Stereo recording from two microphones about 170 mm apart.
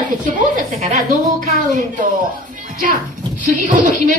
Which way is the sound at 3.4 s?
50° right (ahead or behind).